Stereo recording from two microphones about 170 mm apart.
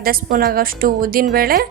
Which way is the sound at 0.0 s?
60° right (ahead or behind).